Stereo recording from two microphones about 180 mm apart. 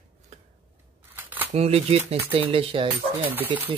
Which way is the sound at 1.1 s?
10° right (ahead or behind).